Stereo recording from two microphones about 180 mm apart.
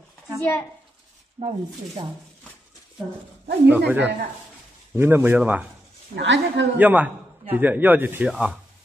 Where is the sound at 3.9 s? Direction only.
10° right (ahead or behind).